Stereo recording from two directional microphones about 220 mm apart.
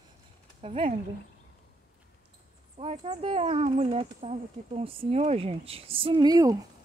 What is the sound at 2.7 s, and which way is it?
Speech, 30° right (ahead or behind).